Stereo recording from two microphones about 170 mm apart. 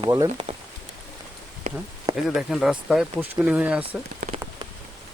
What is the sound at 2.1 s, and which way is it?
Speech, centre (ahead or behind).